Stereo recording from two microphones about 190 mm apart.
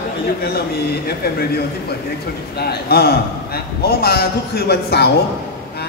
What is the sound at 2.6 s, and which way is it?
A man's voice, 55° left (ahead or behind).